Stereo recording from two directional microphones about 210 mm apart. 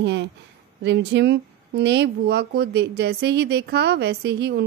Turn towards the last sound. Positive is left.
turn(degrees=-55)  # may be behind; listen again after turning